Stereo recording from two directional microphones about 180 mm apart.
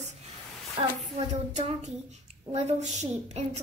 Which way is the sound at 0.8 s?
30° right (ahead or behind).